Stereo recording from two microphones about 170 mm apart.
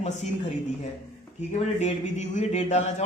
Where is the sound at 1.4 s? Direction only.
40° left (ahead or behind).